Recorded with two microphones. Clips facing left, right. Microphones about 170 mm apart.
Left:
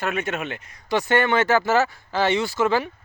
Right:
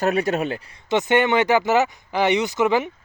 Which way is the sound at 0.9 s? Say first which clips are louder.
Right 2 dB; 20° right (ahead or behind).